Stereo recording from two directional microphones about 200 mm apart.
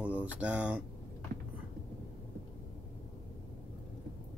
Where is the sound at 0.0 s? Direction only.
5° right (ahead or behind).